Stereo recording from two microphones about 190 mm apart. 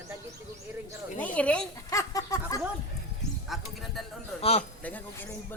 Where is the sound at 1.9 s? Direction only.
15° left (ahead or behind).